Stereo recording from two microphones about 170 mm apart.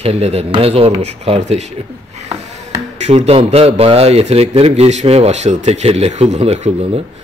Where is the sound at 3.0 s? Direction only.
40° right (ahead or behind).